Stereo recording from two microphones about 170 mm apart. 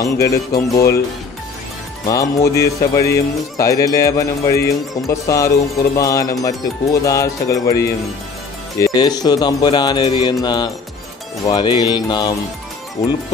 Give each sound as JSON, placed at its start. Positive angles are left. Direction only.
{"t": 0.0, "sound": "speech", "side_deg": 20}
{"t": 2.0, "sound": "speech", "side_deg": 20}